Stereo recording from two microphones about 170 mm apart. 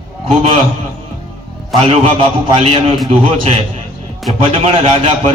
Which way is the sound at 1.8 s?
35° right (ahead or behind).